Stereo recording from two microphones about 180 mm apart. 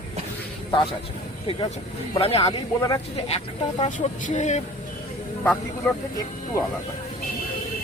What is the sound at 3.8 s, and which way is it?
Speech, 40° left (ahead or behind).